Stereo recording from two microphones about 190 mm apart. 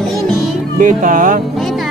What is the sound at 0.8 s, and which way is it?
Speech, 45° right (ahead or behind).